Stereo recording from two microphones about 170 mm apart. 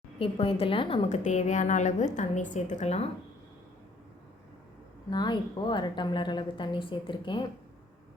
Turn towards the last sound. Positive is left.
turn(degrees=30)  # may be behind; listen again after turning